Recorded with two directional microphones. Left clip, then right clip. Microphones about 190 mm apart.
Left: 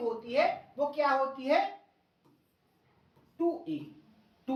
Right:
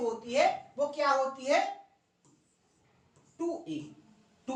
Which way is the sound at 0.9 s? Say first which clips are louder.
Even; 15° right (ahead or behind).